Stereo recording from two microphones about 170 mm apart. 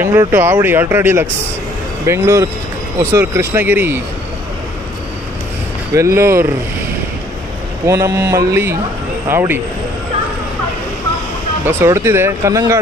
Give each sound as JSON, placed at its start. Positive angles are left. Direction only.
{"t": 0.0, "sound": "speech", "side_deg": -15}
{"t": 5.9, "sound": "speech", "side_deg": -15}
{"t": 7.8, "sound": "speech", "side_deg": -15}
{"t": 11.6, "sound": "speech", "side_deg": -15}